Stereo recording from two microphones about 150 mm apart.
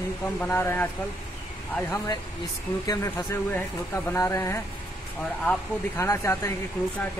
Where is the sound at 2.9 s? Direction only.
20° left (ahead or behind).